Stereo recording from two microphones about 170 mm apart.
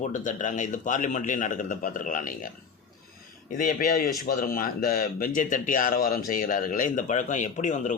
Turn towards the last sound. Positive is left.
turn(degrees=45)  # may be behind; listen again after turning